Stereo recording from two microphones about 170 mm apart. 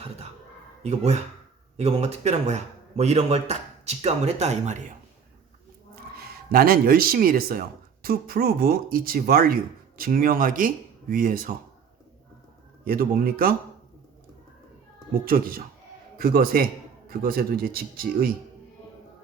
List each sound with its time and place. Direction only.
0.8 s speech: 40° right (ahead or behind)
6.1 s speech: 60° right (ahead or behind)
12.8 s speech: 60° right (ahead or behind)
15.2 s speech: 55° right (ahead or behind)